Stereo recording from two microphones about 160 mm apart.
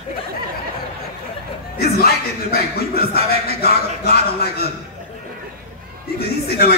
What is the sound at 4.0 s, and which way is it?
Speech, 75° left (ahead or behind).